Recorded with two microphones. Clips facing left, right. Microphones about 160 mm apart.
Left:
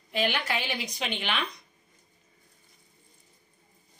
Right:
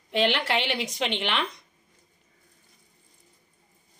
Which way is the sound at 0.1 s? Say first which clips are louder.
Right 4 dB; 85° right.